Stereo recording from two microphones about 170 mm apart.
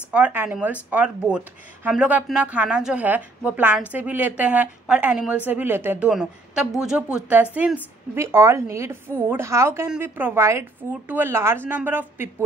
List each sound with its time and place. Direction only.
0.1 s a woman's voice: 10° right (ahead or behind)